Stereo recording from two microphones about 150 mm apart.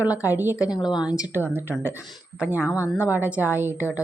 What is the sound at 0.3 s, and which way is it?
Speech, 10° right (ahead or behind).